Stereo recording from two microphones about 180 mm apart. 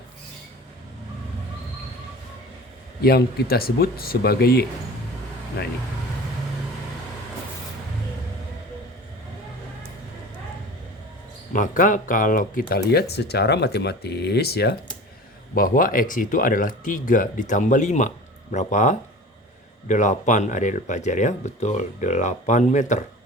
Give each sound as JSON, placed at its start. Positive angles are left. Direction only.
{"t": 3.0, "sound": "speech", "side_deg": 60}
{"t": 11.5, "sound": "speech", "side_deg": 50}
{"t": 15.5, "sound": "speech", "side_deg": 50}